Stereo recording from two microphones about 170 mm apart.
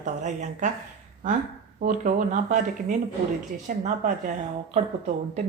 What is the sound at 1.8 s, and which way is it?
Speech, 50° right (ahead or behind).